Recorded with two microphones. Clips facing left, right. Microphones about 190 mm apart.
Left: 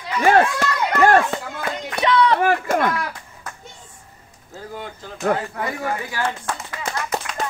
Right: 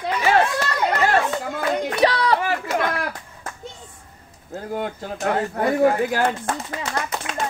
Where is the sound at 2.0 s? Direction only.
35° right (ahead or behind).